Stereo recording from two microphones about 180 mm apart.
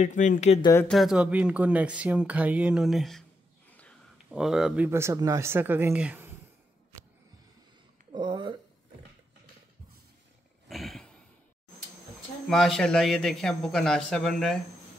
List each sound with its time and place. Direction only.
0.0 s speech: 45° left (ahead or behind)
0.6 s speech: 20° left (ahead or behind)
0.8 s speech: centre (ahead or behind)
4.3 s speech: 5° right (ahead or behind)
8.1 s a sound: 25° right (ahead or behind)
10.7 s a sound: centre (ahead or behind)
12.4 s a man's voice: centre (ahead or behind)